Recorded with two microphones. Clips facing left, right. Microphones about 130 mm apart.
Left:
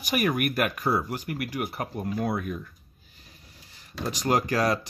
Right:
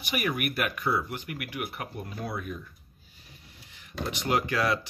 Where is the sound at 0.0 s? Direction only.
45° left (ahead or behind).